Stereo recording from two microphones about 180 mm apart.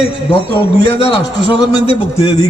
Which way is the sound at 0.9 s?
35° left (ahead or behind).